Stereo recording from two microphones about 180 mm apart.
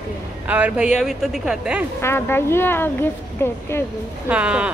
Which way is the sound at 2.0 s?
15° left (ahead or behind).